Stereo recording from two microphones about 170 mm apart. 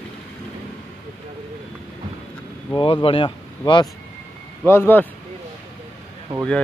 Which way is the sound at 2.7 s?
30° left (ahead or behind).